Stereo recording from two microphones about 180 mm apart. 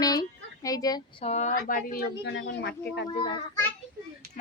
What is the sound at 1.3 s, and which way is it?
A woman's voice, 40° left (ahead or behind).